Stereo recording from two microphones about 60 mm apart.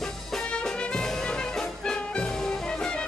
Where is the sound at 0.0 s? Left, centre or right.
Centre.